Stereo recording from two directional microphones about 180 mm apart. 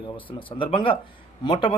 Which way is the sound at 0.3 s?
30° left (ahead or behind).